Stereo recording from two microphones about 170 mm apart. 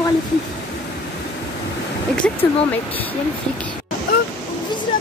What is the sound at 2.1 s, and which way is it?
Speech, 10° left (ahead or behind).